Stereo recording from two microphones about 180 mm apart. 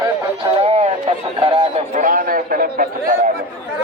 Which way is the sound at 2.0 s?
50° right (ahead or behind).